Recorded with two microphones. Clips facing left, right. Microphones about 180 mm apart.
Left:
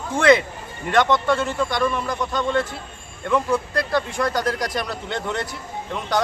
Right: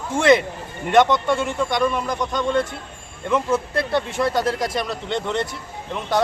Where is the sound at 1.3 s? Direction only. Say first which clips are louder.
Even; 20° right (ahead or behind).